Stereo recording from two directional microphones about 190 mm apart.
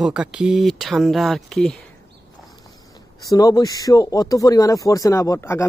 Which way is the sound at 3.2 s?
20° left (ahead or behind).